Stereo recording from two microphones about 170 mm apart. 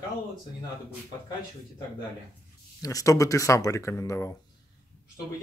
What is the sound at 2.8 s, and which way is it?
Speech, 20° left (ahead or behind).